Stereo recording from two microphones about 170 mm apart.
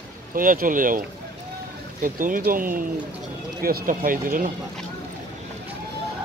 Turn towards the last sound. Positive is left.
turn(degrees=-55)  # may be behind; listen again after turning